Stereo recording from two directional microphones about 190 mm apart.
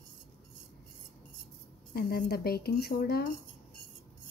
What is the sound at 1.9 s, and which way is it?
Speech, 55° left (ahead or behind).